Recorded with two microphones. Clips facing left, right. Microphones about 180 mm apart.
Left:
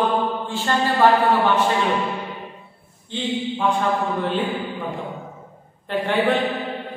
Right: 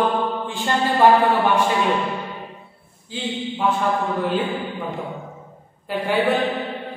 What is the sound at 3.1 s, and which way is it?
Speech, 5° right (ahead or behind).